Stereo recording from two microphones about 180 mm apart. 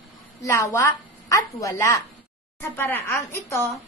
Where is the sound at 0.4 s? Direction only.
15° left (ahead or behind).